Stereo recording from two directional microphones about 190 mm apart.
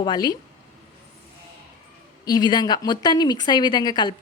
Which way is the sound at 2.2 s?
20° left (ahead or behind).